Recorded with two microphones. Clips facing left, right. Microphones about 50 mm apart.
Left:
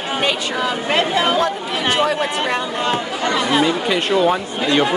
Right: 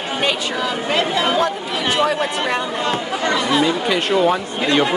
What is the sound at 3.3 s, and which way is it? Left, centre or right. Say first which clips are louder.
Speech: left 2 dB; left.